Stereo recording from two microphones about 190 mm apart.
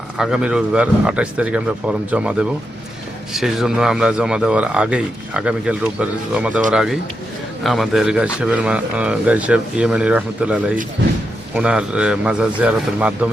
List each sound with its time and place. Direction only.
0.2 s a man's voice: 5° right (ahead or behind)